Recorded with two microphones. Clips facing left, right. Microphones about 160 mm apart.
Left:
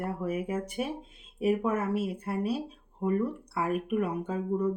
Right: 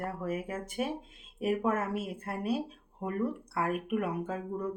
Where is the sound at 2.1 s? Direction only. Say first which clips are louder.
Left 2 dB; 5° right (ahead or behind).